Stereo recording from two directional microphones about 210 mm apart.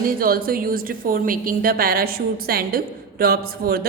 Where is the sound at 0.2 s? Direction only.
45° right (ahead or behind).